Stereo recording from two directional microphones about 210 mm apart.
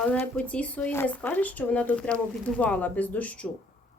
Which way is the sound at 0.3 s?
5° left (ahead or behind).